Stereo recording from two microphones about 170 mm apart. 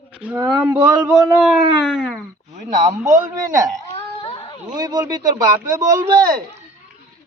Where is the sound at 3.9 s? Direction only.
35° left (ahead or behind).